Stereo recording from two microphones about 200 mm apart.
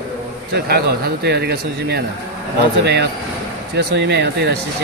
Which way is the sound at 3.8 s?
55° right (ahead or behind).